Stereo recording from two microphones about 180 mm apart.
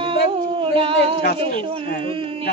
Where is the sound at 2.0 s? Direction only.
30° right (ahead or behind).